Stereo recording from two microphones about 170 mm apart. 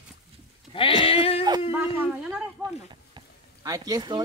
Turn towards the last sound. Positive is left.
turn(degrees=-25)  # may be behind; listen again after turning